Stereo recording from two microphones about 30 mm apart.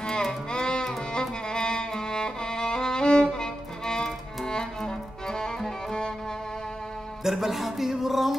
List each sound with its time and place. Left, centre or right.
0.1 s music: left
7.2 s music: centre